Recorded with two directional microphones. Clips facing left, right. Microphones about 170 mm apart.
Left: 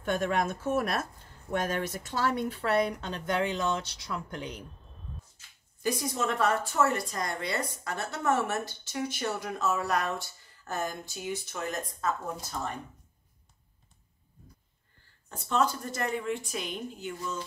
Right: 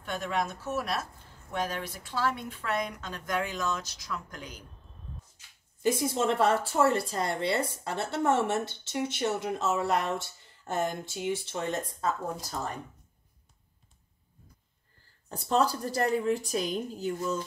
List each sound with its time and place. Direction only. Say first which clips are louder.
0.0 s speech: left 3 dB; 50° left (ahead or behind); by 4.6 s 25° left (ahead or behind)
5.8 s speech: right 3 dB; 25° right (ahead or behind)
15.2 s a woman's voice: right 2 dB; 35° right (ahead or behind)